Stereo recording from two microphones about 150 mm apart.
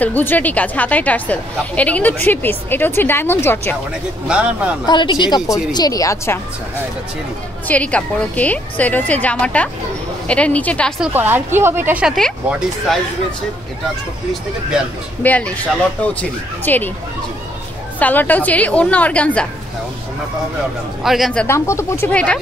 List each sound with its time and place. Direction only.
0.0 s a woman's voice: 10° left (ahead or behind)
4.3 s speech: 10° right (ahead or behind)
4.8 s a woman's voice: 30° left (ahead or behind)
7.6 s a woman's voice: 10° left (ahead or behind)
11.0 s speech: 15° right (ahead or behind)
15.2 s a woman's voice: 10° left (ahead or behind)
17.9 s a woman's voice: 10° left (ahead or behind)
21.0 s speech: centre (ahead or behind)
21.5 s a woman's voice: 20° left (ahead or behind)